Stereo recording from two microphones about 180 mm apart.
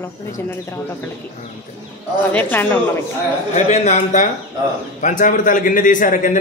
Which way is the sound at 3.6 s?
40° left (ahead or behind).